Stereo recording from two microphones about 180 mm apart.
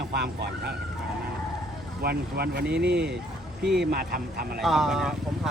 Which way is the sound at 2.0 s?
60° right (ahead or behind).